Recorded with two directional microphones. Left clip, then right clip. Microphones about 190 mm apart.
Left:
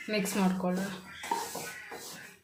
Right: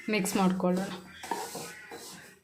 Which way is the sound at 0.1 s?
50° right (ahead or behind).